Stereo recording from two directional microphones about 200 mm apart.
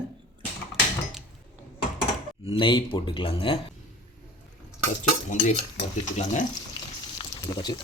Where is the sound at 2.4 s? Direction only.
25° left (ahead or behind).